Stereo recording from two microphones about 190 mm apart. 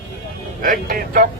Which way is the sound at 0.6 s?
50° right (ahead or behind).